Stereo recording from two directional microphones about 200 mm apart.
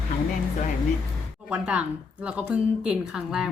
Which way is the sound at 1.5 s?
5° right (ahead or behind).